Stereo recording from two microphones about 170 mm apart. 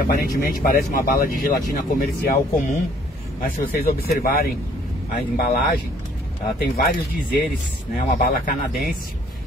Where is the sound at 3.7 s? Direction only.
60° left (ahead or behind).